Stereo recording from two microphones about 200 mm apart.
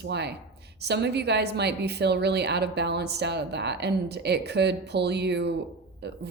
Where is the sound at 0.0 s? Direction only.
55° right (ahead or behind).